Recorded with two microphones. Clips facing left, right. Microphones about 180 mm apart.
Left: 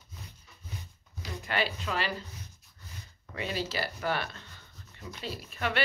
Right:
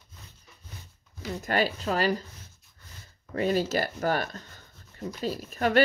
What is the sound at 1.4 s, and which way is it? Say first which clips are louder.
Speech: right 5 dB; 40° right (ahead or behind).